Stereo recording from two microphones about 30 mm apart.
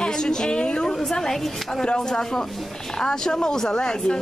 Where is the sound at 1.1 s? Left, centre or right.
Centre.